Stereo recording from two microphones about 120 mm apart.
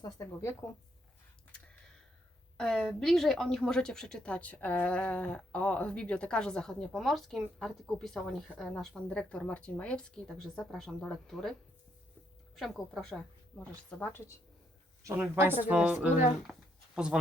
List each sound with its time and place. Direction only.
0.0 s speech: 25° left (ahead or behind)
2.6 s a woman's voice: 5° left (ahead or behind)
12.5 s a woman's voice: centre (ahead or behind); by 14.3 s 20° left (ahead or behind)
15.0 s a woman's voice: 20° right (ahead or behind)
16.5 s a sound: 5° right (ahead or behind)